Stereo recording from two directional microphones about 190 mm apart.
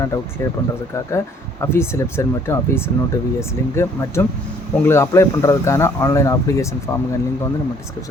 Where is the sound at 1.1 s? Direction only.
15° left (ahead or behind).